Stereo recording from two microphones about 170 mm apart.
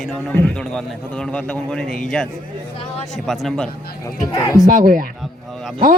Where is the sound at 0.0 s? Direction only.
5° left (ahead or behind).